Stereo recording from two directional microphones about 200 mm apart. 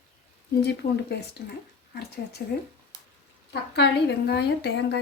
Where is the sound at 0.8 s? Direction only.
45° left (ahead or behind).